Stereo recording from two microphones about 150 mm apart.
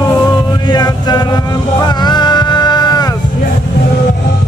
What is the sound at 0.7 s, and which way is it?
Mantra, 30° left (ahead or behind).